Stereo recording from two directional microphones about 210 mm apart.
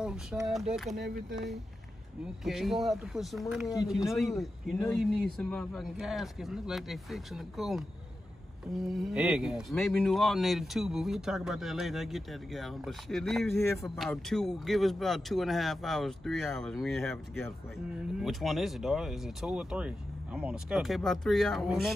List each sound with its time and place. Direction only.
0.0 s speech: 5° right (ahead or behind)
1.0 s speech: 50° right (ahead or behind)
2.4 s speech: centre (ahead or behind)